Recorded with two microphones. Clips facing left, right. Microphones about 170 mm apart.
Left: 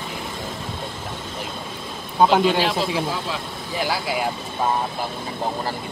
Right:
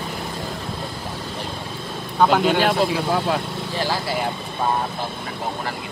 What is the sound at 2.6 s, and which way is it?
Speech, 55° right (ahead or behind).